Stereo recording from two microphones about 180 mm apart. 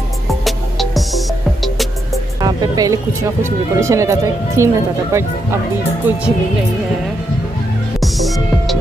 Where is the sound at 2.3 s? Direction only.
20° right (ahead or behind).